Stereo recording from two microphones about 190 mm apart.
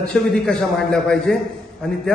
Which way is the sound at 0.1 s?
5° left (ahead or behind).